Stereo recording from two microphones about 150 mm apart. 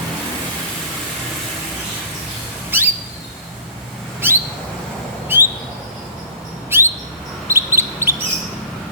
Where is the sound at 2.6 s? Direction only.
15° right (ahead or behind).